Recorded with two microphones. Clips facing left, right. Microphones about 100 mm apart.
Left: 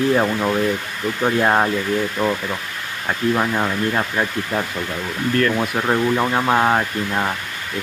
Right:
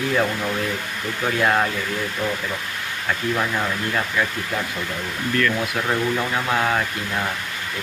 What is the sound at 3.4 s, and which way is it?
Speech, 30° left (ahead or behind).